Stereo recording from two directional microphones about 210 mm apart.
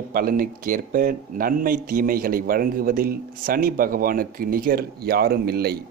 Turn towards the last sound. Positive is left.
turn(degrees=-50)  # may be behind; listen again after turning